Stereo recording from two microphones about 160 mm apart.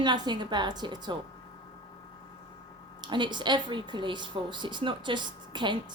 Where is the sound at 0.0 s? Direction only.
30° right (ahead or behind).